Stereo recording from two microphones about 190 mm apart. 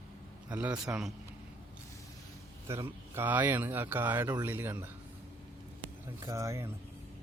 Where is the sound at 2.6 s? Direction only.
15° right (ahead or behind).